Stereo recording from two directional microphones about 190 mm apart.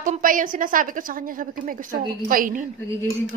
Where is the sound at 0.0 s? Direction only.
45° right (ahead or behind).